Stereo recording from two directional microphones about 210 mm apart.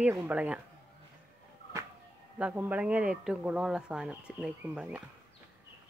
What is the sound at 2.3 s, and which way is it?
Speech, 5° right (ahead or behind).